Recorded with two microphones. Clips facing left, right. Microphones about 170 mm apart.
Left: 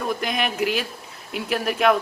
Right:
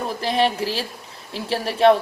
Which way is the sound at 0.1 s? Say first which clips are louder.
Right 7 dB; 30° right (ahead or behind).